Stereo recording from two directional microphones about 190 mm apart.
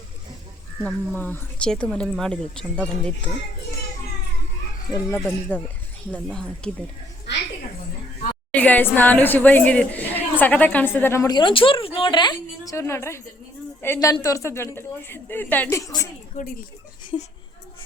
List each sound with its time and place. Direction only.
0.8 s speech: 10° left (ahead or behind)
4.9 s speech: 20° left (ahead or behind)
5.2 s speech: centre (ahead or behind)
8.5 s a woman's voice: 10° left (ahead or behind)